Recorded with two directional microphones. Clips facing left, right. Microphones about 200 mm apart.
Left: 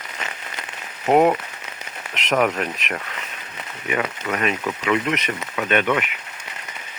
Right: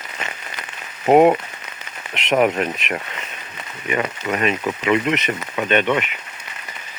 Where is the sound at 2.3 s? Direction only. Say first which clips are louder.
Right 3 dB; 20° right (ahead or behind).